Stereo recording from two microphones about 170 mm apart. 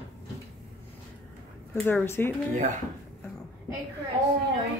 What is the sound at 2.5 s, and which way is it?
Speech, 45° right (ahead or behind).